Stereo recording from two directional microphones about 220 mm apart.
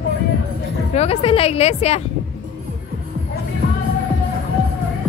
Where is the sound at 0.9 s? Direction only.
30° left (ahead or behind).